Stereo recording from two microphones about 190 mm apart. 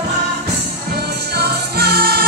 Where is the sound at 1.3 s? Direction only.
60° right (ahead or behind).